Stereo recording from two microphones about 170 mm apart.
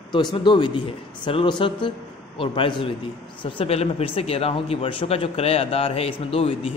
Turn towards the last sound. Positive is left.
turn(degrees=35)  # may be behind; listen again after turning